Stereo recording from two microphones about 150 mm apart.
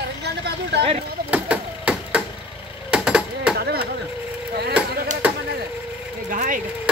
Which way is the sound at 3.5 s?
90° right.